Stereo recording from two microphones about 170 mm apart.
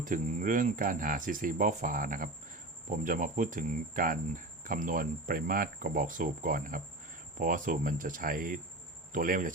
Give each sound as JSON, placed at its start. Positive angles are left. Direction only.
{"t": 0.0, "sound": "speech", "side_deg": -50}